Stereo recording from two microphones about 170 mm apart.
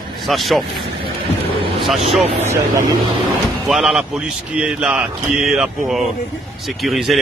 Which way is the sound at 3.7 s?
Centre (ahead or behind).